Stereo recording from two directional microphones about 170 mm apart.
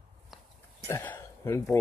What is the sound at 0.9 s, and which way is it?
Speech, 15° left (ahead or behind).